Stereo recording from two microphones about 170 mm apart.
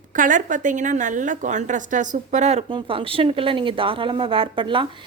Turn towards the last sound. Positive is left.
turn(degrees=-30)  # may be behind; listen again after turning